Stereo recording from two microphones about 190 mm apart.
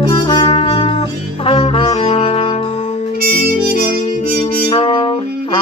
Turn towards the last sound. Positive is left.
turn(degrees=30)  # may be behind; listen again after turning